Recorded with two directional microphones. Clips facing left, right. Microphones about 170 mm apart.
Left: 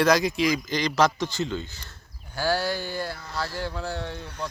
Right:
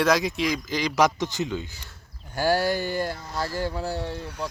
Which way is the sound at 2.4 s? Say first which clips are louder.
Right 3 dB; 45° right (ahead or behind).